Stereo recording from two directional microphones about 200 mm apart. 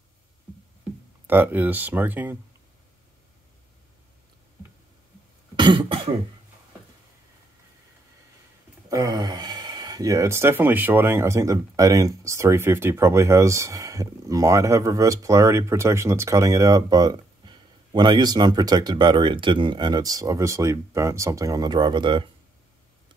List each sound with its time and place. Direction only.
1.2 s speech: 10° right (ahead or behind)
5.6 s cough: 25° right (ahead or behind)
8.8 s speech: 15° right (ahead or behind)